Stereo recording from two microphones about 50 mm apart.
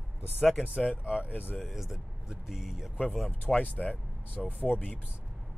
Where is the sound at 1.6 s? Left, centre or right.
Centre.